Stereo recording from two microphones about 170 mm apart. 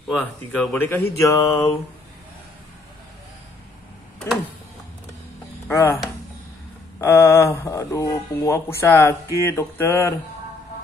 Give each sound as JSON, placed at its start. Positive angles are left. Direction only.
{"t": 0.2, "sound": "speech", "side_deg": 10}
{"t": 5.7, "sound": "speech", "side_deg": 15}
{"t": 7.0, "sound": "speech", "side_deg": 15}